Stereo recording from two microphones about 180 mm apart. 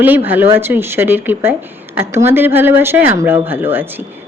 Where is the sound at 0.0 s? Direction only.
10° right (ahead or behind).